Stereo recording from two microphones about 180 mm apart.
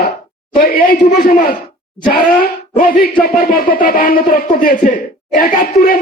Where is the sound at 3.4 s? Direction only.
55° left (ahead or behind).